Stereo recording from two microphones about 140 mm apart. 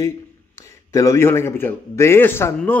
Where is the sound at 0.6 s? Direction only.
20° left (ahead or behind).